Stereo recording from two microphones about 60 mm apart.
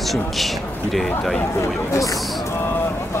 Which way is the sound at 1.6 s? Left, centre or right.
Left.